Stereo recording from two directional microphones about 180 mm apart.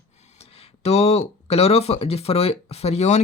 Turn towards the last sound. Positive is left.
turn(degrees=40)  # may be behind; listen again after turning